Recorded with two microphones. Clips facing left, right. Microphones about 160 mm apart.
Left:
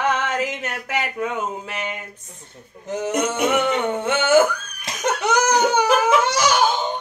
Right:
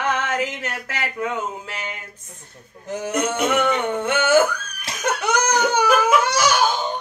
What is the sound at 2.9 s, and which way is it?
Speech, 20° left (ahead or behind).